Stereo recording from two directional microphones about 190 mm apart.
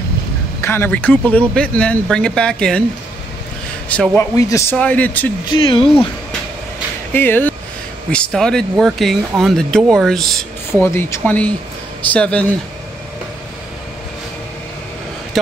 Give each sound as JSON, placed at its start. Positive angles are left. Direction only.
{"t": 0.6, "sound": "speech", "side_deg": 10}
{"t": 3.9, "sound": "speech", "side_deg": 5}
{"t": 5.5, "sound": "speech", "side_deg": 25}
{"t": 7.2, "sound": "speech", "side_deg": 10}
{"t": 10.7, "sound": "speech", "side_deg": 15}